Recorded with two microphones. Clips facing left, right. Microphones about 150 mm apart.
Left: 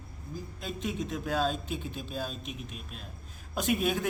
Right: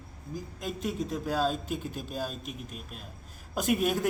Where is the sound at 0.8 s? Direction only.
40° right (ahead or behind).